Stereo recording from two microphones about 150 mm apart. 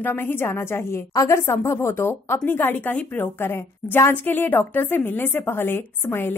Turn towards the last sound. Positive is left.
turn(degrees=15)  # may be behind; listen again after turning